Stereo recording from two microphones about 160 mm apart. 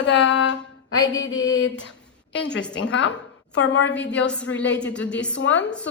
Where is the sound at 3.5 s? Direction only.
90° left.